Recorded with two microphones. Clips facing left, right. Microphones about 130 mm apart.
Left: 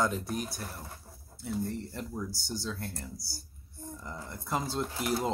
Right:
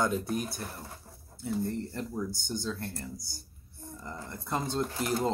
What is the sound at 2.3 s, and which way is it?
Speech, 55° right (ahead or behind).